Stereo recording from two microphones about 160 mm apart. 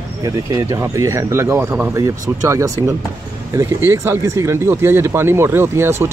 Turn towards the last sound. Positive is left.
turn(degrees=-15)  # may be behind; listen again after turning